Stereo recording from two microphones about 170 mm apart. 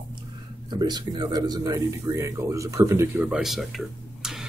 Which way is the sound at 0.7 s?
25° right (ahead or behind).